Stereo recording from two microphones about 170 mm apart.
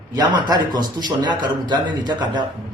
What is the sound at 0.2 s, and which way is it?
A man's voice, 25° right (ahead or behind).